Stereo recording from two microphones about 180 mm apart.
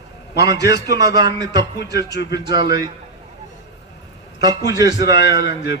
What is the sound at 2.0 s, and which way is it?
Speech, 70° left (ahead or behind).